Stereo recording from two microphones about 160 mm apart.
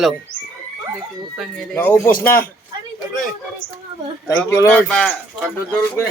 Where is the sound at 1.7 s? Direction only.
10° left (ahead or behind).